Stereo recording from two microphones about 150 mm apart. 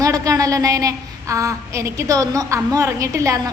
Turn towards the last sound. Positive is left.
turn(degrees=-20)  # may be behind; listen again after turning